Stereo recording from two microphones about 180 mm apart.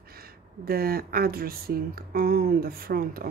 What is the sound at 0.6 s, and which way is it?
Speech, 55° right (ahead or behind).